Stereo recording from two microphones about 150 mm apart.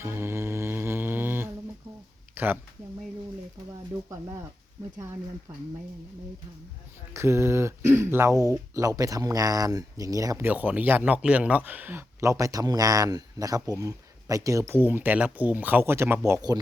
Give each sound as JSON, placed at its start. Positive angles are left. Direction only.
{"t": 0.0, "sound": "mantra", "side_deg": -15}
{"t": 2.3, "sound": "speech", "side_deg": -15}
{"t": 5.5, "sound": "speech", "side_deg": -15}
{"t": 7.1, "sound": "speech", "side_deg": -20}